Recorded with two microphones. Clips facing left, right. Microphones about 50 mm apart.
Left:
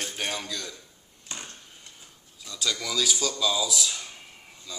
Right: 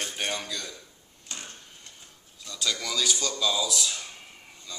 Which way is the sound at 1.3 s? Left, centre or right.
Centre.